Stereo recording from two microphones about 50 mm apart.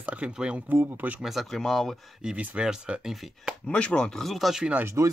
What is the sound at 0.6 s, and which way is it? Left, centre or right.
Speech, right.